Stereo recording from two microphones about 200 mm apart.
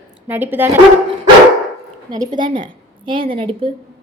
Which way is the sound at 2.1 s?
20° right (ahead or behind).